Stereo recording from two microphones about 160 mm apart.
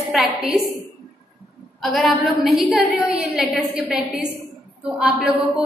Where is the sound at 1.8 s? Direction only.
Centre (ahead or behind).